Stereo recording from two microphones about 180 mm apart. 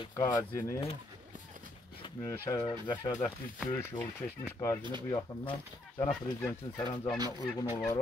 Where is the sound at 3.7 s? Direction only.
15° left (ahead or behind).